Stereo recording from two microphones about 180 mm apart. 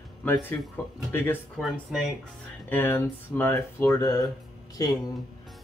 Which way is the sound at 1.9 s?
5° right (ahead or behind).